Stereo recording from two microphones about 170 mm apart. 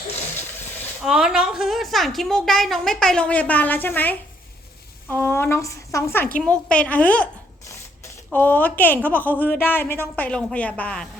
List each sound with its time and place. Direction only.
1.0 s a woman's voice: 5° right (ahead or behind)
7.7 s a sound: 15° left (ahead or behind)
9.0 s a woman's voice: 10° left (ahead or behind)